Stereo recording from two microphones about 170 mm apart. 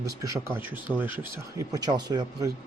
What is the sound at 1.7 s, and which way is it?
Speech, 25° right (ahead or behind).